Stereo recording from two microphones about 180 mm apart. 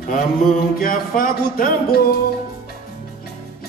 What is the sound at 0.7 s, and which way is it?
Speech, 50° left (ahead or behind).